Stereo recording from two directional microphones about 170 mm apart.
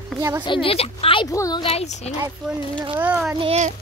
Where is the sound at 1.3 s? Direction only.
20° left (ahead or behind).